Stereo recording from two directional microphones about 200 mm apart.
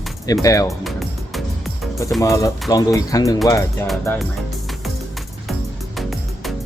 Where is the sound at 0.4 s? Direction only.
15° left (ahead or behind).